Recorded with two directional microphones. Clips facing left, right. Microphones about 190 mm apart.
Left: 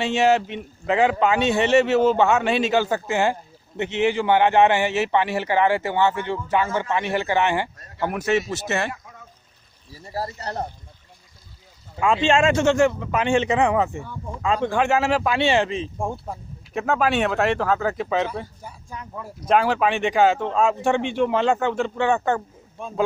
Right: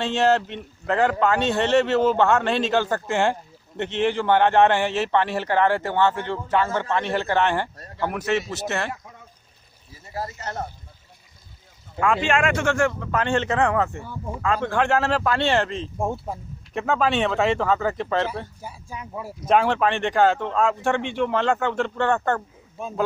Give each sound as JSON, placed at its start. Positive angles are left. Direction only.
{"t": 0.0, "sound": "a man's voice", "side_deg": 10}
{"t": 10.1, "sound": "speech", "side_deg": 35}
{"t": 12.0, "sound": "a man's voice", "side_deg": 25}
{"t": 16.0, "sound": "speech", "side_deg": -5}
{"t": 18.6, "sound": "a man's voice", "side_deg": -10}
{"t": 22.8, "sound": "speech", "side_deg": -5}